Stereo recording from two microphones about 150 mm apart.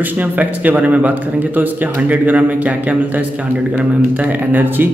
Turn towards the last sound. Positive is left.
turn(degrees=-10)  # may be behind; listen again after turning